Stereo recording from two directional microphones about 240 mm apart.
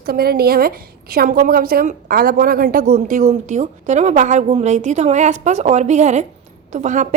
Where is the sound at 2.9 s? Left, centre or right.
Right.